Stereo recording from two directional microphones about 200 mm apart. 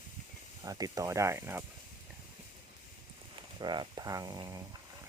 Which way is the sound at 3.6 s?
20° right (ahead or behind).